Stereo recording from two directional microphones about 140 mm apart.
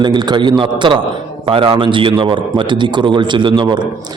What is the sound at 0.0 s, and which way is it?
A man's voice, 30° right (ahead or behind).